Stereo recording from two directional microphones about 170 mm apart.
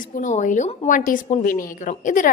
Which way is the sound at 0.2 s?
50° left (ahead or behind).